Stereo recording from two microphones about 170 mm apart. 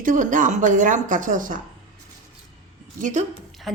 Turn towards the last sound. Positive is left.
turn(degrees=0)  # may be behind; listen again after turning